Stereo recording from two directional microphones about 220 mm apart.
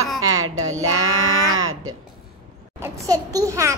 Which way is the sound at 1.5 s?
70° right (ahead or behind).